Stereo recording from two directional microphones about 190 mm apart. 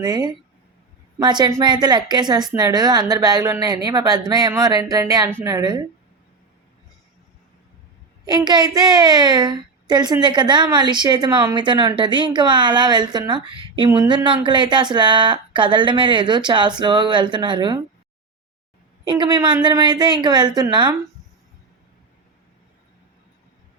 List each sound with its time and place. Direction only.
0.0 s a woman's voice: 20° right (ahead or behind)
8.2 s a woman's voice: 20° right (ahead or behind)
19.0 s a woman's voice: 25° right (ahead or behind)